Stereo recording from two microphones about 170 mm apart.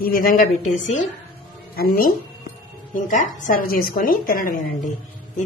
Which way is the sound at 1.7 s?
60° left (ahead or behind).